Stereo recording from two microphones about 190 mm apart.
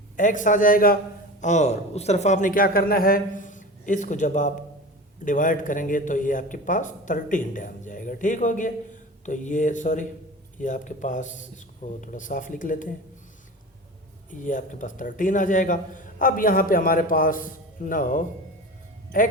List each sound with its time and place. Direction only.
0.2 s a man's voice: 40° left (ahead or behind)
1.4 s a man's voice: 40° left (ahead or behind)
14.3 s a man's voice: 45° left (ahead or behind)